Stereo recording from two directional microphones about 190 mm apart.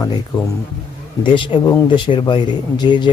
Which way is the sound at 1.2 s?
25° left (ahead or behind).